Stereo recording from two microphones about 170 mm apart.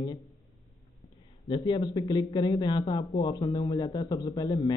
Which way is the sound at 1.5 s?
25° left (ahead or behind).